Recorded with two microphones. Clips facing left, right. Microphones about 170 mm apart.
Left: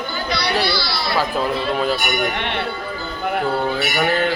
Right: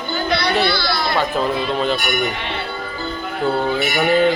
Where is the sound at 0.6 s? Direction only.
55° right (ahead or behind).